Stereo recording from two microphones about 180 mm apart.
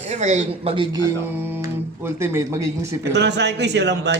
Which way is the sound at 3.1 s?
75° right (ahead or behind).